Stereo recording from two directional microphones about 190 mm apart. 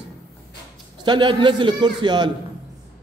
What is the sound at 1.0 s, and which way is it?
A man's voice, 25° right (ahead or behind).